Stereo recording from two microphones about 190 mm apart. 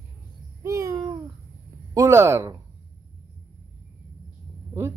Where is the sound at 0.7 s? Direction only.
15° right (ahead or behind).